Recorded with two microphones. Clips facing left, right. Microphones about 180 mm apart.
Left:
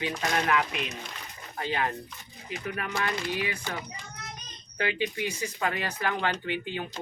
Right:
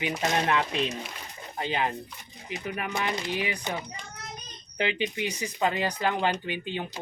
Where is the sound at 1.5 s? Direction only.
20° right (ahead or behind).